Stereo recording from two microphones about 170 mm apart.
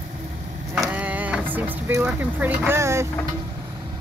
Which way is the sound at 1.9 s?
10° right (ahead or behind).